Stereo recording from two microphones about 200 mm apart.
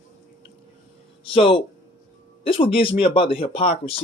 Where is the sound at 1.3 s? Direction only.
25° left (ahead or behind).